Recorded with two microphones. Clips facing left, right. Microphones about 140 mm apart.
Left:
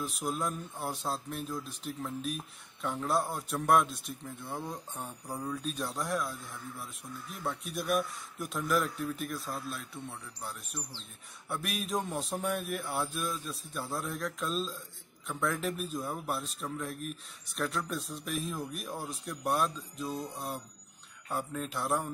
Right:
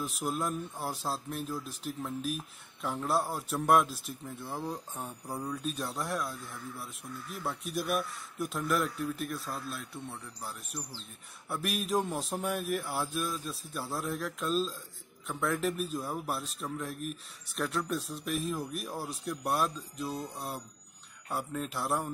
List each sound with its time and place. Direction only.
0.0 s a man's voice: 5° right (ahead or behind)
11.4 s a man's voice: centre (ahead or behind)